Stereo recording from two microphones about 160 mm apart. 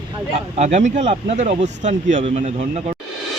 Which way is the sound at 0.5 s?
45° right (ahead or behind).